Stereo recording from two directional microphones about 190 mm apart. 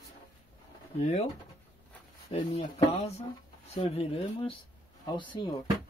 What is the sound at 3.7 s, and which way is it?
Speech, 30° left (ahead or behind).